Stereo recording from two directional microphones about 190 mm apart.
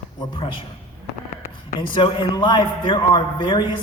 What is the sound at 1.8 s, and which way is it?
A man's voice, 25° left (ahead or behind).